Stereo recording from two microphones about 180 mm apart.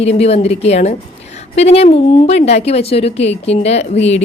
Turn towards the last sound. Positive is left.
turn(degrees=35)  # may be behind; listen again after turning